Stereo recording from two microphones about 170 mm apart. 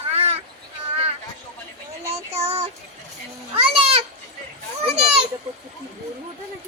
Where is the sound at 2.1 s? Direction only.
35° right (ahead or behind).